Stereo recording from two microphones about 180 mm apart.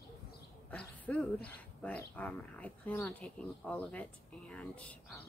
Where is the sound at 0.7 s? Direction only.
5° left (ahead or behind).